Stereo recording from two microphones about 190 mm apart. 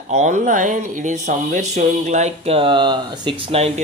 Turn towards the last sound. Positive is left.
turn(degrees=-30)  # may be behind; listen again after turning